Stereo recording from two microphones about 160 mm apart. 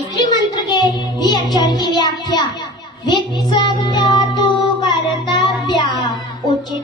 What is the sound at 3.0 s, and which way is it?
Child singing, 25° left (ahead or behind).